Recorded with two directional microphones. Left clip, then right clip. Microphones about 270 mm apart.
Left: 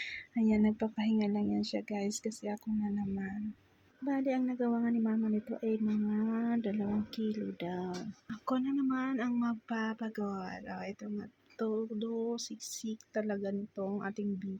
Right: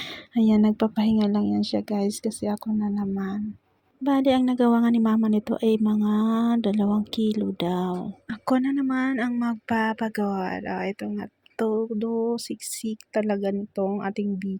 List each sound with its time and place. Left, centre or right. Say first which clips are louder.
0.0 s speech: right 9 dB; right
8.3 s speech: right 10 dB; right